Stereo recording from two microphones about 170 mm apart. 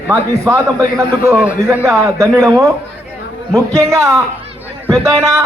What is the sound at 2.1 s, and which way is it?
A man's voice, 20° right (ahead or behind).